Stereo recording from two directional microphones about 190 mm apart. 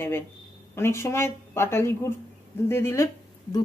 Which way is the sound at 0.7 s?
15° left (ahead or behind).